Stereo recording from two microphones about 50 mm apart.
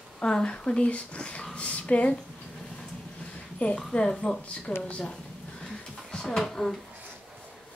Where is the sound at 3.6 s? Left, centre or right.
Left.